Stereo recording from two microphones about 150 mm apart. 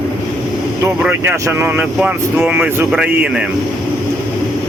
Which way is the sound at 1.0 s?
15° right (ahead or behind).